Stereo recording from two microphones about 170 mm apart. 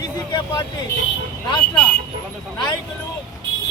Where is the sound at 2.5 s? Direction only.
25° left (ahead or behind).